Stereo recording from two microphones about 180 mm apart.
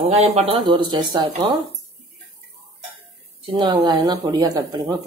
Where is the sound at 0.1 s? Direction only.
35° right (ahead or behind).